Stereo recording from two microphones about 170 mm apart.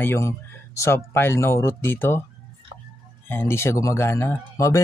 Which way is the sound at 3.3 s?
15° left (ahead or behind).